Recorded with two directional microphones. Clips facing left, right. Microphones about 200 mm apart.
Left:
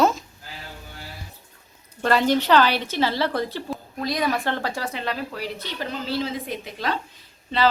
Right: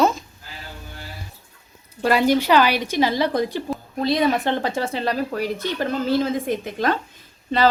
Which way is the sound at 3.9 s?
25° right (ahead or behind).